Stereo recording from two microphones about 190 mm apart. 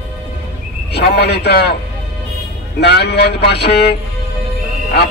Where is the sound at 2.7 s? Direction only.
60° left (ahead or behind).